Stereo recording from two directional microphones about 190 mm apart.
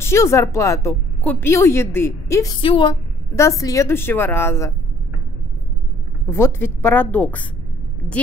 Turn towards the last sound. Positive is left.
turn(degrees=10)  # may be behind; listen again after turning